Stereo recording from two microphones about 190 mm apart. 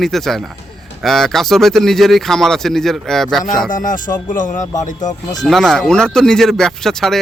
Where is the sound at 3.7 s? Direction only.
45° left (ahead or behind).